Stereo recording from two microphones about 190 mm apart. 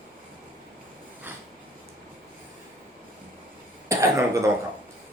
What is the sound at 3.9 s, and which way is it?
Cough, 15° right (ahead or behind).